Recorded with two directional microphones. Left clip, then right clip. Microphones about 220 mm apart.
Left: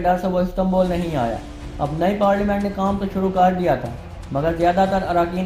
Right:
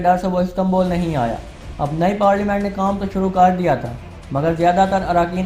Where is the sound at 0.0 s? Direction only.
30° right (ahead or behind).